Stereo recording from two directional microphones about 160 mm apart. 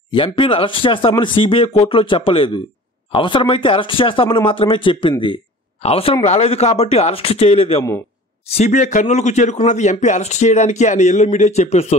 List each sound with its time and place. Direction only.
0.1 s speech: 35° left (ahead or behind)
5.2 s a sound: 35° left (ahead or behind)
6.2 s a man's voice: 40° left (ahead or behind)